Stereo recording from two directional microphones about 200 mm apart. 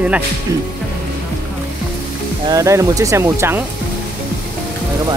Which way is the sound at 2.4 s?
15° right (ahead or behind).